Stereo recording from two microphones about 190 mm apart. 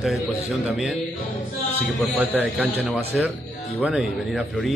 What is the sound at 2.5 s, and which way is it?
Speech, 10° right (ahead or behind).